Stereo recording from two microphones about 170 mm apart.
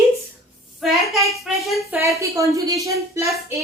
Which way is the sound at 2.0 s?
20° right (ahead or behind).